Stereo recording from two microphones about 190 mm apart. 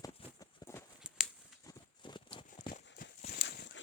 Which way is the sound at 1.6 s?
25° left (ahead or behind).